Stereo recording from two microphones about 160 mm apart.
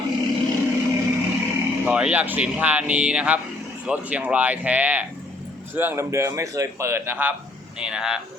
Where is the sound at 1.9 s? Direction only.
5° right (ahead or behind).